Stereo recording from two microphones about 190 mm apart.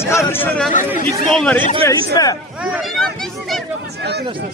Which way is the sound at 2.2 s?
20° left (ahead or behind).